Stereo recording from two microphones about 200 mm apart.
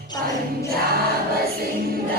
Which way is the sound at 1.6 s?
50° right (ahead or behind).